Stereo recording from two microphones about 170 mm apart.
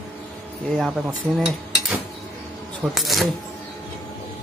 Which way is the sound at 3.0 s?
Centre (ahead or behind).